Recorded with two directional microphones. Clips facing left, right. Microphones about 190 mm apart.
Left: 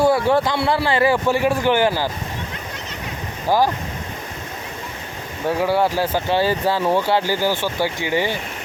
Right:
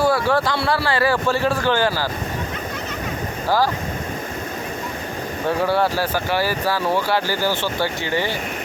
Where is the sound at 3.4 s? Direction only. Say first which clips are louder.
Left 2 dB; 20° left (ahead or behind).